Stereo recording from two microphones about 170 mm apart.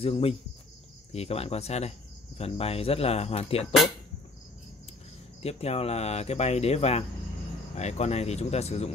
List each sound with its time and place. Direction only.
0.0 s speech: 35° left (ahead or behind)
5.4 s speech: 40° left (ahead or behind)